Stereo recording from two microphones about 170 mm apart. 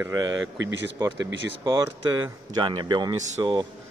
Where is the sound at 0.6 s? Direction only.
90° right.